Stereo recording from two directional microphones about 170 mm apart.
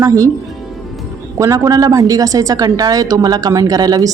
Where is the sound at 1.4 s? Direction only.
20° right (ahead or behind).